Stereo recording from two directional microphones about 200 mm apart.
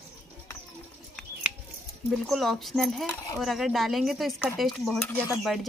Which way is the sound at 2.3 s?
Centre (ahead or behind).